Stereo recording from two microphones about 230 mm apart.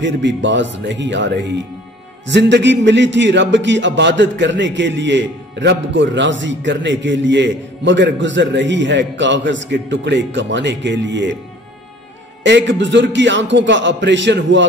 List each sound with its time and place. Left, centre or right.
0.0 s a man's voice: right
12.4 s a man's voice: right